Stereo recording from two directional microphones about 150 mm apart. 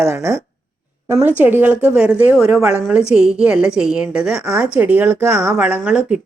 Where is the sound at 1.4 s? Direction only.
15° right (ahead or behind).